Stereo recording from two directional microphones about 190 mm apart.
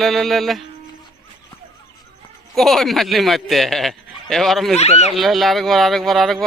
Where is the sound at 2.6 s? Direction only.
Centre (ahead or behind).